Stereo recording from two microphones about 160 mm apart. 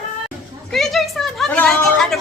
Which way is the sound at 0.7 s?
Centre (ahead or behind).